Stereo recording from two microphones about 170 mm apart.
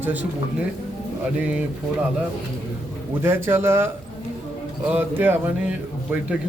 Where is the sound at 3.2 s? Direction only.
15° right (ahead or behind).